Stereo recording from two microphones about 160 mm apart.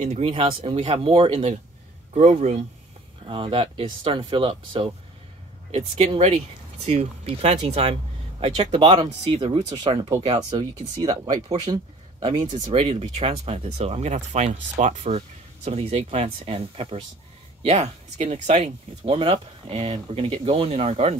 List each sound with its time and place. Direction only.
0.0 s speech: 40° right (ahead or behind)
2.1 s speech: 50° right (ahead or behind)
3.3 s speech: 30° right (ahead or behind)
12.7 s speech: 40° right (ahead or behind)